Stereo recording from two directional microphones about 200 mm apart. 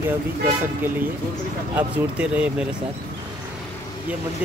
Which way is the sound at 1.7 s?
5° right (ahead or behind).